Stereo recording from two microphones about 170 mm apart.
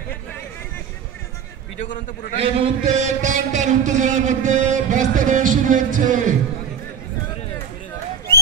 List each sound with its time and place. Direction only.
2.3 s a man's voice: 35° right (ahead or behind)
2.8 s a man's voice: 45° right (ahead or behind)